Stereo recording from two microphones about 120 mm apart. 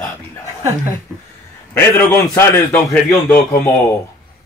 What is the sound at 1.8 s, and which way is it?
Speech, 20° left (ahead or behind).